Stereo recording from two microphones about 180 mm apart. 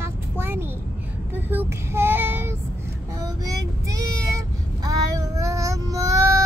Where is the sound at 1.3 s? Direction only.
10° right (ahead or behind).